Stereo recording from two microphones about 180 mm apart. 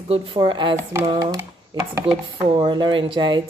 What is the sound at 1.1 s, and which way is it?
Chopping, 20° right (ahead or behind).